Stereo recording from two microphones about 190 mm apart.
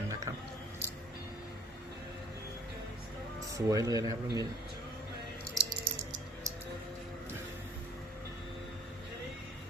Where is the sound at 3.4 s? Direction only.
15° right (ahead or behind).